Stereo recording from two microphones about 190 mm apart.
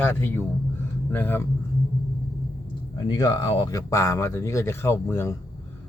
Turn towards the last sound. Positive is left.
turn(degrees=15)  # may be behind; listen again after turning